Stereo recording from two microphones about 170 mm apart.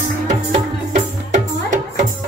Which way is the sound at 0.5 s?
45° right (ahead or behind).